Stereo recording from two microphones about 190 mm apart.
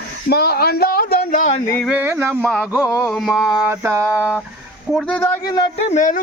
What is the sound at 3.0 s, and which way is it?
Carnatic music, centre (ahead or behind).